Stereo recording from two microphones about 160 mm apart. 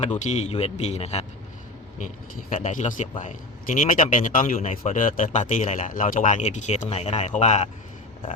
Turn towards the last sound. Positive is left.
turn(degrees=45)  # may be behind; listen again after turning